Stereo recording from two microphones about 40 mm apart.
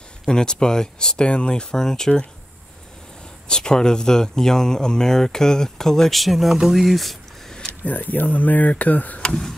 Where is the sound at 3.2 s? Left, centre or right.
Centre.